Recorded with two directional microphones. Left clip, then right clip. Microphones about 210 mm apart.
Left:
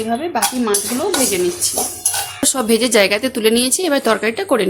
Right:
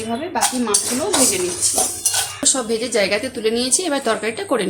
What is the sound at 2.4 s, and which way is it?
Speech, 40° left (ahead or behind).